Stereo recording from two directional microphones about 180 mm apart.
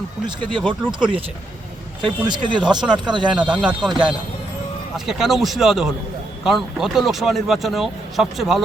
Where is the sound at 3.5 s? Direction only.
5° right (ahead or behind).